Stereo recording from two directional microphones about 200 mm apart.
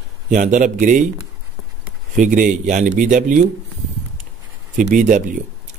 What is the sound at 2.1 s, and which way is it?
Speech, 40° right (ahead or behind).